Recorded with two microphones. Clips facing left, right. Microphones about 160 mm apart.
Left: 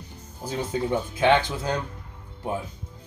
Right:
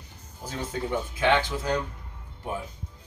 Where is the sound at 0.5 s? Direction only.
25° left (ahead or behind).